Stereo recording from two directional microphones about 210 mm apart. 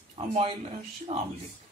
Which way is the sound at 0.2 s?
30° right (ahead or behind).